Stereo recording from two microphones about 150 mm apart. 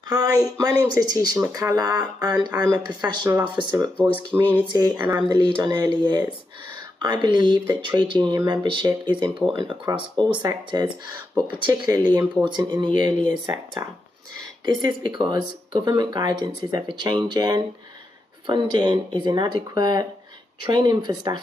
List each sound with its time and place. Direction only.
0.1 s speech: 25° right (ahead or behind)
4.1 s speech: 30° right (ahead or behind)
14.6 s speech: 30° right (ahead or behind)